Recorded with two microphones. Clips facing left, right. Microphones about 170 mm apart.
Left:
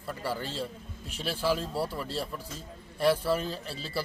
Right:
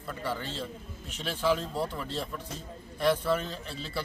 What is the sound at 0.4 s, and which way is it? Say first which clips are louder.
Speech: left 2 dB; 35° left (ahead or behind).